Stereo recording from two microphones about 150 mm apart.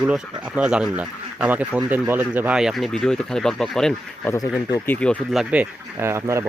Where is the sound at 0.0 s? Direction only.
5° right (ahead or behind).